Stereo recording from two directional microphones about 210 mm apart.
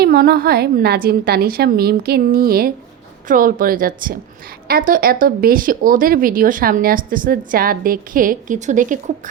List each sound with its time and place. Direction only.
0.0 s a woman's voice: 50° right (ahead or behind)